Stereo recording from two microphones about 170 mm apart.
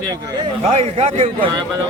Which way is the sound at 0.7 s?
35° right (ahead or behind).